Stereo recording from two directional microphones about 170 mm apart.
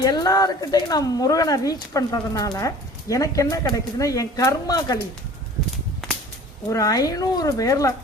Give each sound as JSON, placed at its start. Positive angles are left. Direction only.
{"t": 0.0, "sound": "speech", "side_deg": 20}
{"t": 6.7, "sound": "speech", "side_deg": 20}